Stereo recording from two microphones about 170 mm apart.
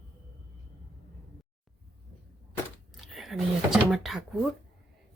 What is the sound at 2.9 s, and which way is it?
Speech, centre (ahead or behind).